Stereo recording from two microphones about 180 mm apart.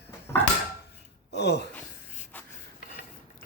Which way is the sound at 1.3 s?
70° left (ahead or behind).